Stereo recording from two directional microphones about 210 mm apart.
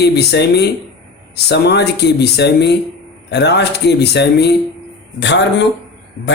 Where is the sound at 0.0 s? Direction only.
50° left (ahead or behind).